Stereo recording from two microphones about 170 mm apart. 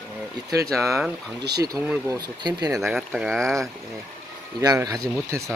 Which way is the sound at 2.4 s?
25° right (ahead or behind).